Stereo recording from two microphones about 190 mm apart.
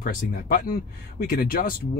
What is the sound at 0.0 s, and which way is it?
Speech, 50° left (ahead or behind).